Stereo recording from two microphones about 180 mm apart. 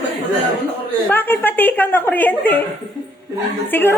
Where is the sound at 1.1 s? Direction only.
10° left (ahead or behind).